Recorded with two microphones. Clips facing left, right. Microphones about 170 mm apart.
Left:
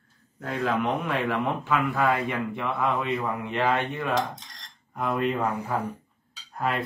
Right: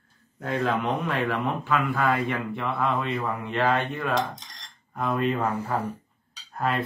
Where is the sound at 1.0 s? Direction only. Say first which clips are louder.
Even; 20° left (ahead or behind).